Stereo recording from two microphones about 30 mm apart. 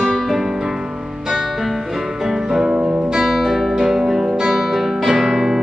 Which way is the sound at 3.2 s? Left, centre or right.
Centre.